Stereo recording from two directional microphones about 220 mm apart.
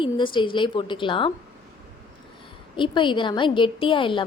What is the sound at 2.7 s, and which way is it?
A woman's voice, 20° left (ahead or behind).